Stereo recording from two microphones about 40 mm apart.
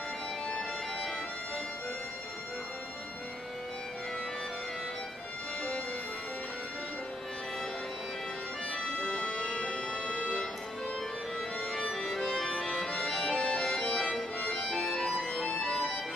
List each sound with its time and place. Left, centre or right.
8.7 s organ: centre
11.9 s music: centre
13.0 s accordion: centre
14.4 s music: centre